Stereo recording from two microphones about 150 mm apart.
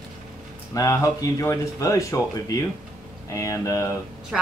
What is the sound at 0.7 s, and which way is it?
Speech, 25° left (ahead or behind).